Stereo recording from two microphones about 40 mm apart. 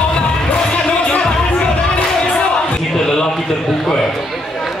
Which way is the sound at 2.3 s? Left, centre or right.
Left.